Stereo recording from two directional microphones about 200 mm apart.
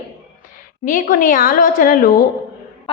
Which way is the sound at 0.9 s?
45° left (ahead or behind).